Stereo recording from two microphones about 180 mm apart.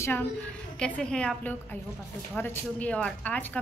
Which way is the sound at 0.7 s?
5° left (ahead or behind).